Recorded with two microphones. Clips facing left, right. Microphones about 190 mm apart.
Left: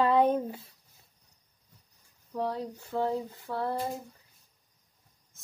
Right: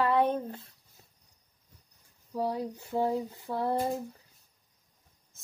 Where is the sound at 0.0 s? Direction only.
15° left (ahead or behind).